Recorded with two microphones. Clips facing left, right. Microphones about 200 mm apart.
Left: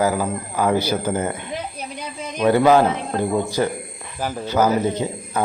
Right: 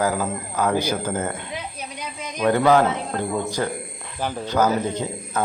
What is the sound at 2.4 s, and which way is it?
Speech, 10° left (ahead or behind).